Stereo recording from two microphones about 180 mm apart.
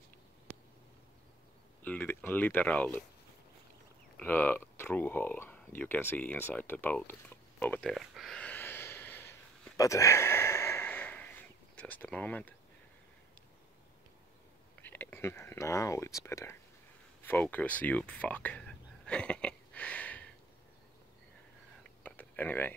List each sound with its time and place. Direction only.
1.8 s speech: 10° left (ahead or behind)
4.2 s speech: 10° left (ahead or behind)
7.9 s a sound: centre (ahead or behind)
11.7 s speech: 10° left (ahead or behind)
14.8 s speech: 10° left (ahead or behind)
22.0 s a sound: 10° left (ahead or behind)